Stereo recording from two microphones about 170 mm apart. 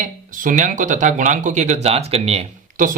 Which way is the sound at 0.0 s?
50° right (ahead or behind).